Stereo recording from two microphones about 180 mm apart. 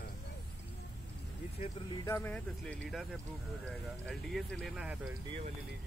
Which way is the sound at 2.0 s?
10° left (ahead or behind).